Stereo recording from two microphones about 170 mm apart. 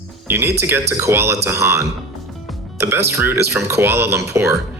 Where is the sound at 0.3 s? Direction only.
15° right (ahead or behind).